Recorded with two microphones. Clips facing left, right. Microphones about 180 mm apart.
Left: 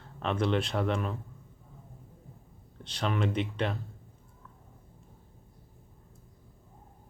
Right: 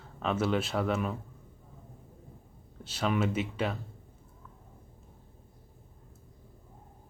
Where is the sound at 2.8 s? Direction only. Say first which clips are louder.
Right 1 dB; 5° right (ahead or behind).